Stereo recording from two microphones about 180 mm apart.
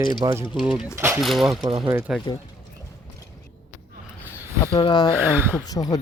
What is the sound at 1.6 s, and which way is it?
Speech, 25° right (ahead or behind).